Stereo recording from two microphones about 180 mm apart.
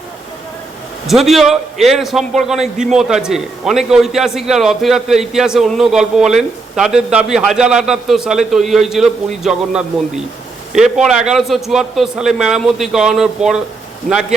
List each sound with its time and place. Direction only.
1.0 s a man's voice: centre (ahead or behind)